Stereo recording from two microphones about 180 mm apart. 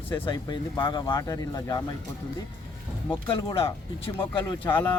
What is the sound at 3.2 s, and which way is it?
Speech, 25° left (ahead or behind).